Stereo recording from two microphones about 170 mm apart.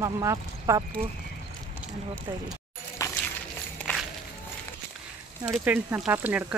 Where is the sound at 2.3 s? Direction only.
20° right (ahead or behind).